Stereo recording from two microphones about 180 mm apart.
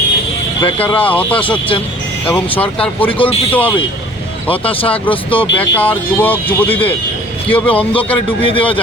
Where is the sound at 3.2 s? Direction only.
30° left (ahead or behind).